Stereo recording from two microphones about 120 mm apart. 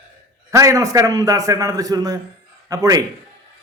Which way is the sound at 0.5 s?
25° right (ahead or behind).